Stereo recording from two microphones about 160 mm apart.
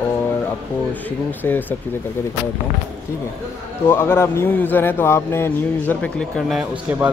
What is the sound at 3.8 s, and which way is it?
A man's voice, 15° left (ahead or behind).